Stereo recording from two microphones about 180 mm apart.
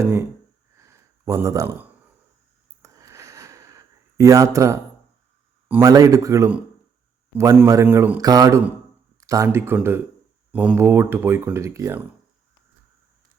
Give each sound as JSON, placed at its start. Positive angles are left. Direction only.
{"t": 0.0, "sound": "speech", "side_deg": -15}
{"t": 0.8, "sound": "a sound", "side_deg": -15}
{"t": 5.6, "sound": "speech", "side_deg": -15}